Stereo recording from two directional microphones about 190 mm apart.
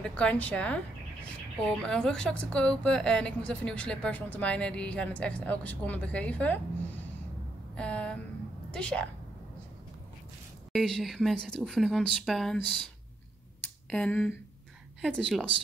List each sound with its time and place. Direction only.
0.0 s a woman's voice: 5° left (ahead or behind)
7.7 s a woman's voice: 5° left (ahead or behind)
10.7 s a woman's voice: centre (ahead or behind)
13.8 s a woman's voice: 5° left (ahead or behind)